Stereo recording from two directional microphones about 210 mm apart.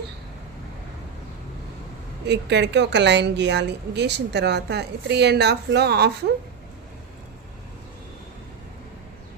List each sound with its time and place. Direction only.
2.2 s a woman's voice: 55° right (ahead or behind)